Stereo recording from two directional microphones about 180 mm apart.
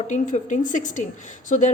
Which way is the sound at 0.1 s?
45° left (ahead or behind).